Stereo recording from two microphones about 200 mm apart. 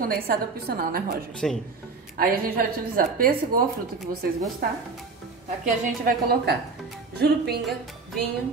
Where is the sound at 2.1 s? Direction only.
50° right (ahead or behind).